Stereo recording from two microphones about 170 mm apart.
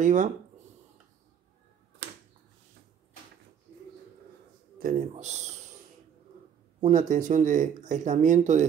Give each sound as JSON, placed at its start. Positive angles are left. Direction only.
{"t": 0.0, "sound": "speech", "side_deg": -50}
{"t": 5.1, "sound": "speech", "side_deg": -40}
{"t": 6.8, "sound": "speech", "side_deg": -50}